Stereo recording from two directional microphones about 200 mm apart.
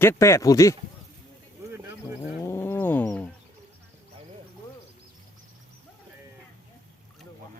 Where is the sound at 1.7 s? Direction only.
10° right (ahead or behind).